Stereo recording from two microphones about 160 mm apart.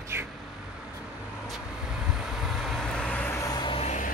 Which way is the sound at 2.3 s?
Centre (ahead or behind).